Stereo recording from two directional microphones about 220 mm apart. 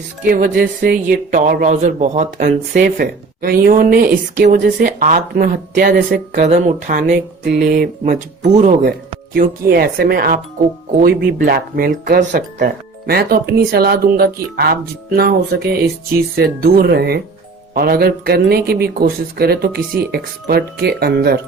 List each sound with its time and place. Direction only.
0.3 s a man's voice: 40° right (ahead or behind)